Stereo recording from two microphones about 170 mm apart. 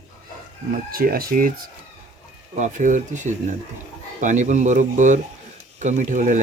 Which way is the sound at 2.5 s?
45° right (ahead or behind).